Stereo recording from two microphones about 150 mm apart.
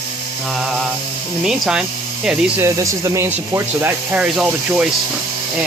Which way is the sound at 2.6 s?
20° right (ahead or behind).